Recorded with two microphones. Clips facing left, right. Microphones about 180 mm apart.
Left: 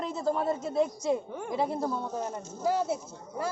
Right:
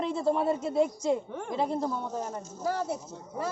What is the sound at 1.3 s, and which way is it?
Speech, 10° left (ahead or behind).